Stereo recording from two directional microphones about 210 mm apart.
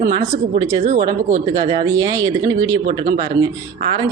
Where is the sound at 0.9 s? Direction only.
35° right (ahead or behind).